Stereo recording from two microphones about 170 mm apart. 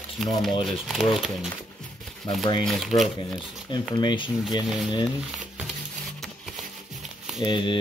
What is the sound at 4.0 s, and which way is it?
Speech, 25° left (ahead or behind).